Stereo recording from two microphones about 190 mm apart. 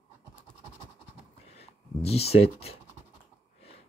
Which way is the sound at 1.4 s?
35° left (ahead or behind).